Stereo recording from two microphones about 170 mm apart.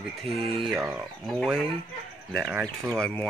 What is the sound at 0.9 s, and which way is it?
Speech, centre (ahead or behind).